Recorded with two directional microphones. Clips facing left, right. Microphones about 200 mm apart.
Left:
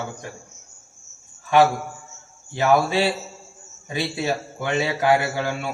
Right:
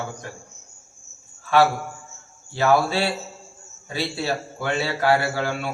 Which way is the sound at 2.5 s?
15° left (ahead or behind).